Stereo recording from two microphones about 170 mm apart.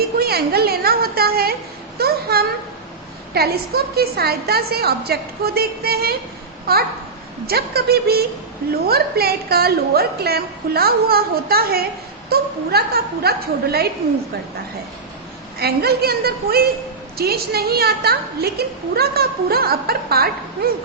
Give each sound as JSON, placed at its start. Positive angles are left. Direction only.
{"t": 0.2, "sound": "a woman's voice", "side_deg": -65}
{"t": 15.5, "sound": "a woman's voice", "side_deg": -70}